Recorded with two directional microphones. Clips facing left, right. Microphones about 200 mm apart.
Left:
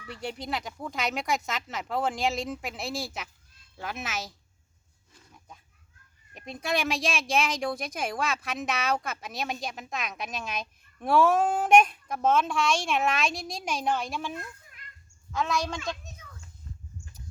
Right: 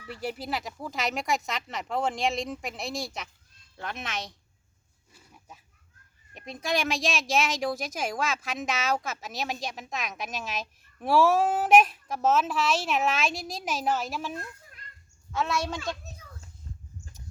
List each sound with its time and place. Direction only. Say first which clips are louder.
0.1 s speech: right 1 dB; centre (ahead or behind)
5.1 s pig: even; 10° right (ahead or behind)
6.3 s speech: even; centre (ahead or behind)